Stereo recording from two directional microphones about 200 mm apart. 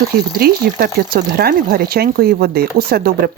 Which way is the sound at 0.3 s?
50° right (ahead or behind).